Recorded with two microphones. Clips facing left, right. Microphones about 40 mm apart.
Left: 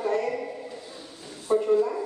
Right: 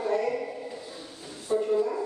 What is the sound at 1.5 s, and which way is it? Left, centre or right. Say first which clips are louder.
Bow-wow: left 3 dB; centre.